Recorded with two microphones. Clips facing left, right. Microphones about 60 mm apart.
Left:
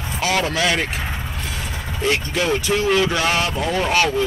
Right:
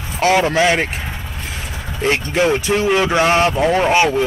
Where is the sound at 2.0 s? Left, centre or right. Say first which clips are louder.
Right 4 dB; right.